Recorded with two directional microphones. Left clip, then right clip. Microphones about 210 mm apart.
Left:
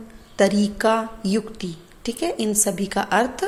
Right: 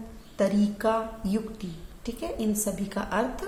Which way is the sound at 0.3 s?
30° left (ahead or behind).